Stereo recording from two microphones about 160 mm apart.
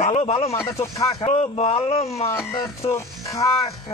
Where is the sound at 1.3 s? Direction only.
45° left (ahead or behind).